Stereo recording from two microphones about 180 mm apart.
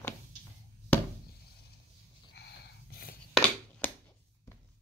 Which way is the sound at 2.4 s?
65° left (ahead or behind).